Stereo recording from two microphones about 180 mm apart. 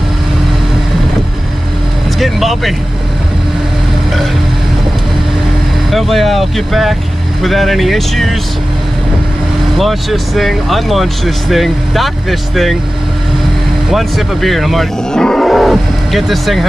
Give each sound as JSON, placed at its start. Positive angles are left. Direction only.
{"t": 2.1, "sound": "vehicle", "side_deg": 0}
{"t": 5.9, "sound": "speech", "side_deg": 0}
{"t": 9.8, "sound": "speech", "side_deg": 0}
{"t": 13.9, "sound": "speech", "side_deg": 0}